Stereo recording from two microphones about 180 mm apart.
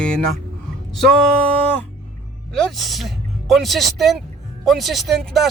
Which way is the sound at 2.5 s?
Centre (ahead or behind).